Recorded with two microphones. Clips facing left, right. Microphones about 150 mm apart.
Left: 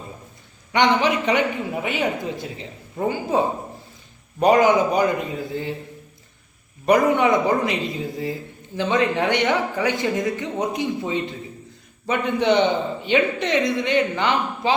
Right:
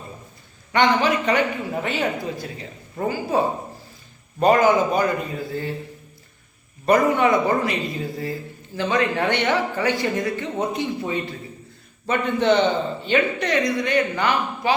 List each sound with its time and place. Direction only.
0.7 s a man's voice: 20° left (ahead or behind)
6.8 s a man's voice: 15° left (ahead or behind)